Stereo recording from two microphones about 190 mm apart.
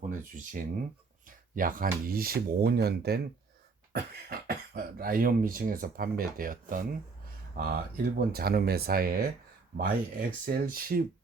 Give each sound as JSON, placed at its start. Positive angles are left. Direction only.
{"t": 0.1, "sound": "speech", "side_deg": -45}